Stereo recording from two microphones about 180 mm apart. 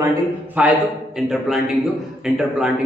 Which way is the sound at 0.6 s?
5° right (ahead or behind).